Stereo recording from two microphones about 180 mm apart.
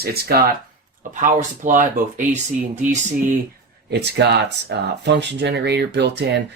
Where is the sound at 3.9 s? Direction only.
70° right (ahead or behind).